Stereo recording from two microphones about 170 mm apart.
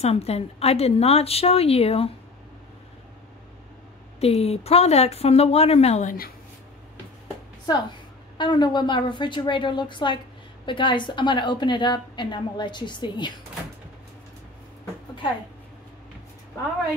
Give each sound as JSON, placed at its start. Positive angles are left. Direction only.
{"t": 0.0, "sound": "a woman's voice", "side_deg": 35}
{"t": 4.2, "sound": "a woman's voice", "side_deg": 35}
{"t": 8.4, "sound": "a woman's voice", "side_deg": 25}